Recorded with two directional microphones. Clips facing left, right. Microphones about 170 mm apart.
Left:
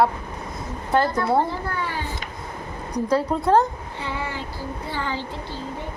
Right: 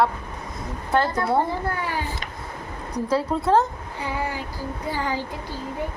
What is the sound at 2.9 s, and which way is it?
A woman's voice, 5° right (ahead or behind).